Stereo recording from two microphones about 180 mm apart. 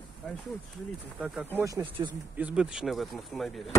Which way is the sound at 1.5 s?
15° right (ahead or behind).